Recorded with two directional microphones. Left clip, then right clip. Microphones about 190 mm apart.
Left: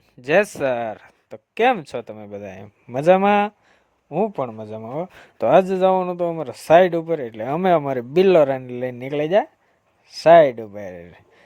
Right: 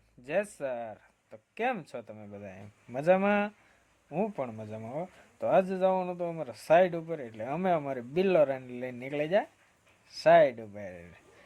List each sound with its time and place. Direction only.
0.2 s speech: 50° left (ahead or behind)